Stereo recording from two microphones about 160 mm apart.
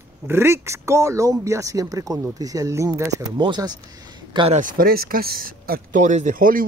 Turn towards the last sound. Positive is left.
turn(degrees=-60)  # may be behind; listen again after turning